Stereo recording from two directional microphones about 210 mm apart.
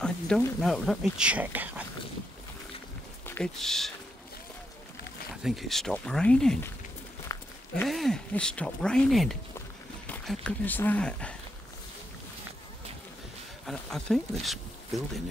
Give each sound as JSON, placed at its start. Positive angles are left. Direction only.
{"t": 0.0, "sound": "speech", "side_deg": 5}
{"t": 3.3, "sound": "speech", "side_deg": 5}
{"t": 5.3, "sound": "speech", "side_deg": 0}
{"t": 7.3, "sound": "walk", "side_deg": 15}
{"t": 7.7, "sound": "speech", "side_deg": 0}
{"t": 13.7, "sound": "speech", "side_deg": 0}